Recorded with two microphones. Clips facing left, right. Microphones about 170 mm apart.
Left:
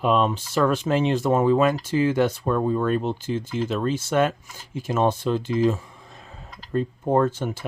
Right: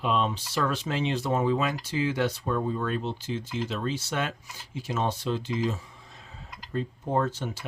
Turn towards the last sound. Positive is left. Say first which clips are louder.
# left 6 dB
turn(degrees=50)  # may be behind; listen again after turning